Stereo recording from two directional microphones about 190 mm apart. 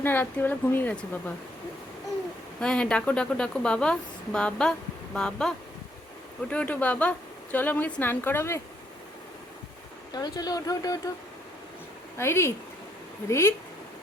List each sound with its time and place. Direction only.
0.0 s speech: 10° left (ahead or behind)
2.6 s a woman's voice: 5° left (ahead or behind)
10.1 s speech: 20° left (ahead or behind)
12.1 s speech: 15° left (ahead or behind)